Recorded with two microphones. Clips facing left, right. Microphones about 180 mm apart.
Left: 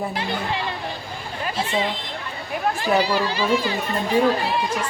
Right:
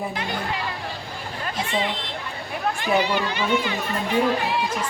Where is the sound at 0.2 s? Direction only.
30° left (ahead or behind).